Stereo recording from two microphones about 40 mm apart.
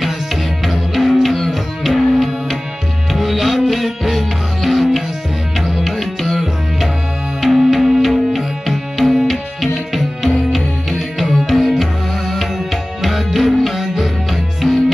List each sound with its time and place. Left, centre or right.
0.0 s music: centre